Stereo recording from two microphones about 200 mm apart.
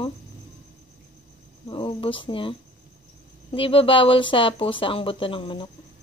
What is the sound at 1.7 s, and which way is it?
Speech, 25° left (ahead or behind).